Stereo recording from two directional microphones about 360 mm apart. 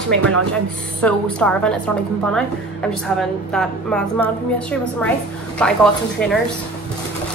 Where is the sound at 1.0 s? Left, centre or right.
Centre.